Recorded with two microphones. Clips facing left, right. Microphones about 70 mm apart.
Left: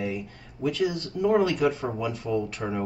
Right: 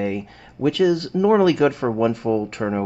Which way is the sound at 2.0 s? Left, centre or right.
Right.